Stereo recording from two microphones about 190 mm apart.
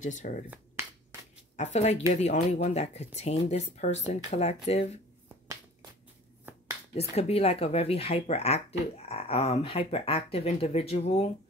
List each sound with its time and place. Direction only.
0.2 s speech: 45° left (ahead or behind)
1.6 s speech: 35° left (ahead or behind)
6.9 s speech: 35° left (ahead or behind)